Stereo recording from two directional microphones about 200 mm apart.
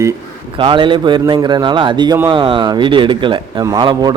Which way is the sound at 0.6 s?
25° right (ahead or behind).